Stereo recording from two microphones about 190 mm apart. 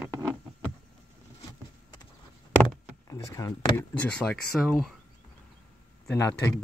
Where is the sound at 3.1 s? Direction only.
15° left (ahead or behind).